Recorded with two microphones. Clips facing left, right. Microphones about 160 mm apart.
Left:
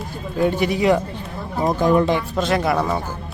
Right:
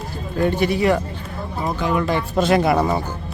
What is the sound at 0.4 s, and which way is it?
Speech, 15° left (ahead or behind).